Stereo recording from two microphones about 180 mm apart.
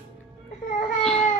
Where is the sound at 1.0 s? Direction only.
5° left (ahead or behind).